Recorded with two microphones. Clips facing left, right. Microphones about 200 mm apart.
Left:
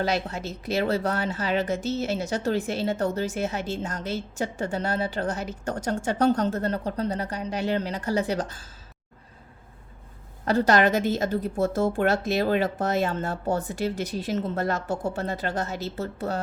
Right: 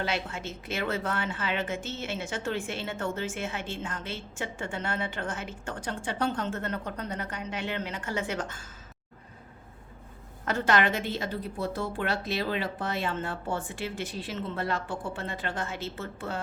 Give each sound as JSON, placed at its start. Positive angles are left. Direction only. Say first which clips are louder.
{"t": 0.0, "sound": "speech", "louder": "left 5 dB", "side_deg": 40}
{"t": 10.4, "sound": "speech", "louder": "left 6 dB", "side_deg": 35}